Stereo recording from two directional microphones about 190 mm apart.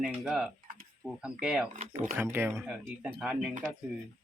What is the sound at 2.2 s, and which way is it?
Speech, 10° right (ahead or behind).